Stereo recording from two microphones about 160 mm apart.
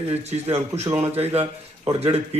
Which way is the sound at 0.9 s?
40° right (ahead or behind).